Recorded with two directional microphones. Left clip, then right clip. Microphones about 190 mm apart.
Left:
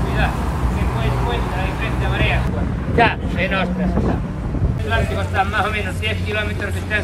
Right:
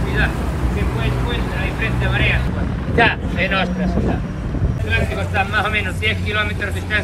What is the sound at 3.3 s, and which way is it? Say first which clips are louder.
Speech: right 1 dB; 45° left (ahead or behind).